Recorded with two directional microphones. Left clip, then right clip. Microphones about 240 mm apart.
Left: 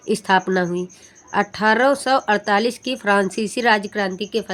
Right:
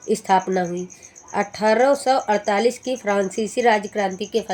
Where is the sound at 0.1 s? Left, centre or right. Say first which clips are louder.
Left 1 dB; left.